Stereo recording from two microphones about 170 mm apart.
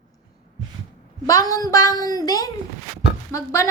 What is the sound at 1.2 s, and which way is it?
A woman's voice, 20° left (ahead or behind).